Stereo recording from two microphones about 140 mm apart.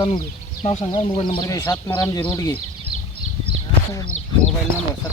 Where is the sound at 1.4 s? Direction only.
20° left (ahead or behind).